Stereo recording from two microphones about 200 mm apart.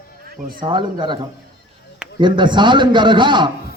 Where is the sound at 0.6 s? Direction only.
25° right (ahead or behind).